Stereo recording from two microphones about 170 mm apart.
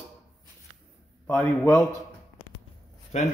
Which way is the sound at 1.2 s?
10° left (ahead or behind).